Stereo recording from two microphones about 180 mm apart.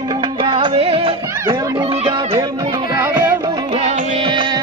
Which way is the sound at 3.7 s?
40° right (ahead or behind).